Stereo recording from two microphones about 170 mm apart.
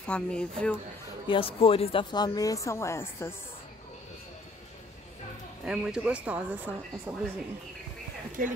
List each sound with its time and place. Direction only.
0.0 s speech: 5° left (ahead or behind)
1.3 s speech: 30° left (ahead or behind); by 3.3 s 15° left (ahead or behind)
5.7 s speech: 5° right (ahead or behind)
8.4 s speech: 55° right (ahead or behind)